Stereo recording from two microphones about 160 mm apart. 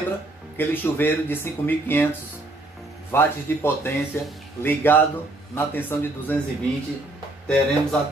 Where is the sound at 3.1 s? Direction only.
15° left (ahead or behind).